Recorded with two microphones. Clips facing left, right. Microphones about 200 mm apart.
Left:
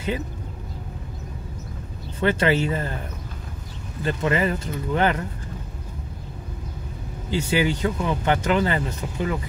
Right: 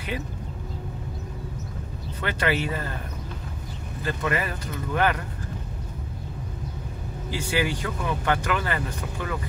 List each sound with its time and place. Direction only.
2.1 s speech: 25° left (ahead or behind)
4.0 s speech: 25° left (ahead or behind)
7.2 s speech: 20° left (ahead or behind)